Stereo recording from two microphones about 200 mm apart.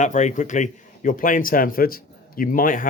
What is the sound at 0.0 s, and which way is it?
A man's voice, 35° left (ahead or behind).